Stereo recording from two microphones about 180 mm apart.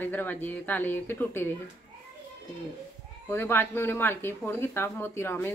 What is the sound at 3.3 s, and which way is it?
Speech, 10° left (ahead or behind).